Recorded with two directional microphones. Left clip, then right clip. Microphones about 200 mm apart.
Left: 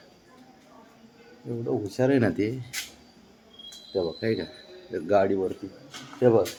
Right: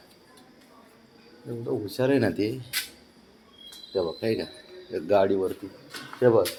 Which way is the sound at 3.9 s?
10° left (ahead or behind).